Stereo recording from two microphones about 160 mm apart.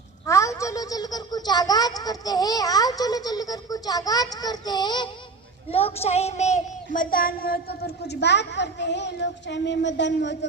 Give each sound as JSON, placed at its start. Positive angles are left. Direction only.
{"t": 0.3, "sound": "a woman's voice", "side_deg": 20}
{"t": 5.7, "sound": "child singing", "side_deg": 40}